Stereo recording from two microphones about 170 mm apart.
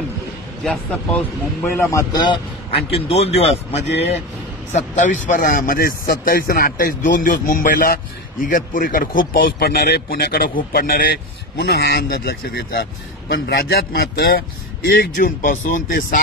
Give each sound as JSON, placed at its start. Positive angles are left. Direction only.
{"t": 0.7, "sound": "speech", "side_deg": 10}
{"t": 1.9, "sound": "a man's voice", "side_deg": 20}
{"t": 15.1, "sound": "speech", "side_deg": 55}